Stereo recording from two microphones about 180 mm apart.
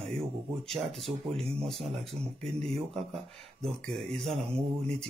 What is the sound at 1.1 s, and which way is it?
Speech, 35° right (ahead or behind).